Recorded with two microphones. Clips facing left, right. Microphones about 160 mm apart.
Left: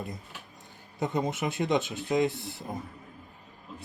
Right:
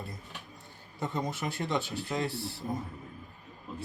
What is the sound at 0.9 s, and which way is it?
Speech, 20° left (ahead or behind).